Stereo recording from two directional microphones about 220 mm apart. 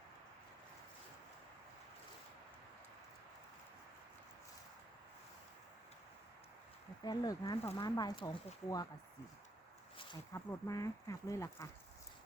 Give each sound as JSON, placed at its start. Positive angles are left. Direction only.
{"t": 7.0, "sound": "speech", "side_deg": 15}
{"t": 10.0, "sound": "speech", "side_deg": 15}